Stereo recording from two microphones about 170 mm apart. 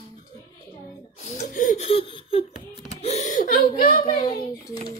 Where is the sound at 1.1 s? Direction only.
45° left (ahead or behind).